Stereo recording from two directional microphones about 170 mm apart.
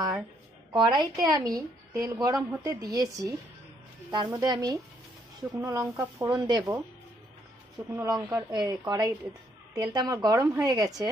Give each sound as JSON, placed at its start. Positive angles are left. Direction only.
{"t": 0.7, "sound": "a woman's voice", "side_deg": -25}
{"t": 7.9, "sound": "a woman's voice", "side_deg": -15}